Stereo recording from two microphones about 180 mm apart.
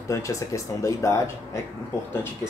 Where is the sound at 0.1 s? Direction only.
15° left (ahead or behind).